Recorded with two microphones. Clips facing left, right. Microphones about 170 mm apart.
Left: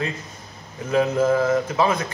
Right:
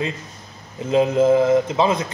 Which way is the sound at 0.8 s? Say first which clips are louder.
Right 3 dB; 20° right (ahead or behind).